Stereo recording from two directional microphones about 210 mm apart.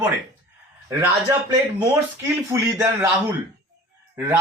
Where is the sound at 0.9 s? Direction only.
10° right (ahead or behind).